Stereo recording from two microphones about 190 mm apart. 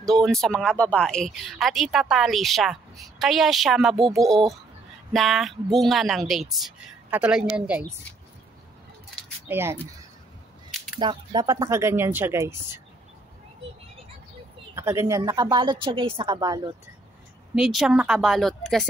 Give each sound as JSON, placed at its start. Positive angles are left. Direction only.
{"t": 0.0, "sound": "speech", "side_deg": 0}
{"t": 9.5, "sound": "speech", "side_deg": -10}
{"t": 11.0, "sound": "speech", "side_deg": -20}
{"t": 14.8, "sound": "a woman's voice", "side_deg": -15}
{"t": 17.6, "sound": "speech", "side_deg": -5}